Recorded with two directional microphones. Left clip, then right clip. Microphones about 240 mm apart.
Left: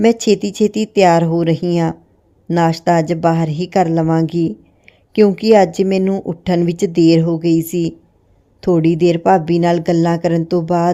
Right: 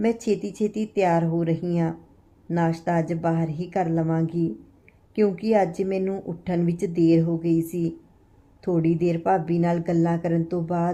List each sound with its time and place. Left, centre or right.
0.0 s speech: left